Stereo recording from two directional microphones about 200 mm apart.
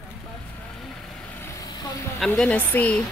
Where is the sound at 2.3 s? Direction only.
5° left (ahead or behind).